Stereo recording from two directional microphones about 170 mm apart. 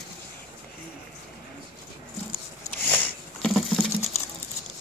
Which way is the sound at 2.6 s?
10° left (ahead or behind).